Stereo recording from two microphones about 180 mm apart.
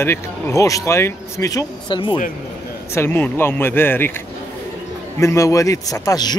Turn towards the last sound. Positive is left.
turn(degrees=20)  # may be behind; listen again after turning